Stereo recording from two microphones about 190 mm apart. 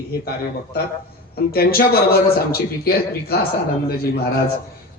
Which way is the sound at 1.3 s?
55° left (ahead or behind).